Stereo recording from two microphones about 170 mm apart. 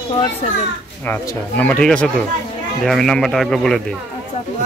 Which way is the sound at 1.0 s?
10° left (ahead or behind).